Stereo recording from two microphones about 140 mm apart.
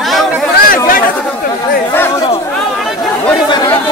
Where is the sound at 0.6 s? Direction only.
90° left.